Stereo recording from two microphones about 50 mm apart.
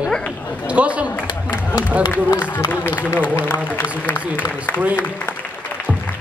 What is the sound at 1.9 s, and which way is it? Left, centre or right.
Speech, right.